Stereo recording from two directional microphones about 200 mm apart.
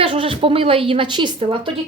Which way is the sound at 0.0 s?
25° right (ahead or behind).